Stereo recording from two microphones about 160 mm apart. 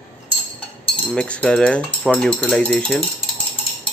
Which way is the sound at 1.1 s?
5° left (ahead or behind).